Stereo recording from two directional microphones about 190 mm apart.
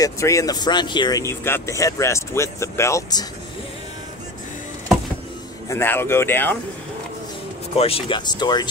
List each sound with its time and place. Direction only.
0.0 s speech: 15° left (ahead or behind)
5.7 s speech: 10° left (ahead or behind)
7.7 s speech: 30° left (ahead or behind)